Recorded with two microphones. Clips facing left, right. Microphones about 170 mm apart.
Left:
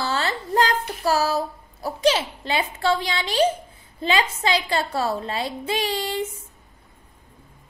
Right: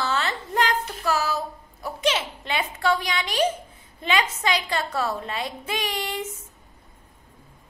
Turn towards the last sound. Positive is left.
turn(degrees=30)  # may be behind; listen again after turning